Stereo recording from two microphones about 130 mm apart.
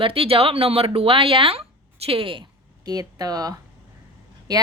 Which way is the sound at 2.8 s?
30° right (ahead or behind).